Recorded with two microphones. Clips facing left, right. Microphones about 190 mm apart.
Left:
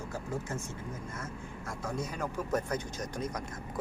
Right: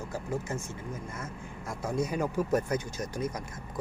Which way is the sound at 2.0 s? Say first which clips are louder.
Right 9 dB; 10° right (ahead or behind).